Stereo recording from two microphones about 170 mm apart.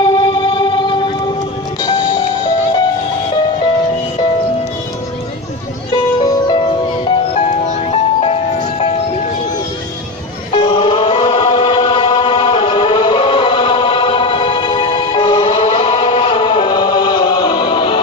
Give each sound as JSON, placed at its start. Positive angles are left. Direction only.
{"t": 0.0, "sound": "music", "side_deg": 25}
{"t": 5.9, "sound": "music", "side_deg": 25}
{"t": 7.3, "sound": "music", "side_deg": 40}
{"t": 10.5, "sound": "chant", "side_deg": 30}